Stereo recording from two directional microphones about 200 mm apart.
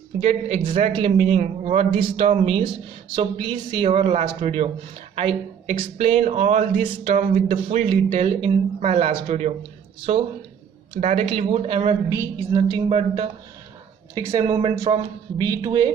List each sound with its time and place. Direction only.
0.2 s a man's voice: 30° right (ahead or behind)
11.0 s speech: 35° right (ahead or behind)
12.1 s a woman's voice: 15° right (ahead or behind)